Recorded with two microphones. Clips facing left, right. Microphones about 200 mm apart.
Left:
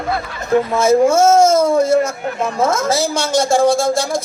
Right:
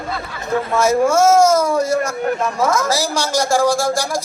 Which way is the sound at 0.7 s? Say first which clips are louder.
Left 1 dB; 20° left (ahead or behind).